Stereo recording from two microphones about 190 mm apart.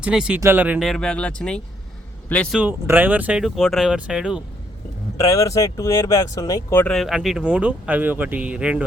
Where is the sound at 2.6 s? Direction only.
10° right (ahead or behind).